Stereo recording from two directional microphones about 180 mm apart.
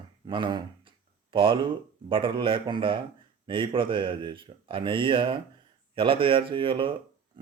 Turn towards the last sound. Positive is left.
turn(degrees=-30)  # may be behind; listen again after turning